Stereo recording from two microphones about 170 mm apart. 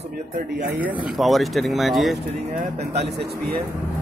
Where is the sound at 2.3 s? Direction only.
40° right (ahead or behind).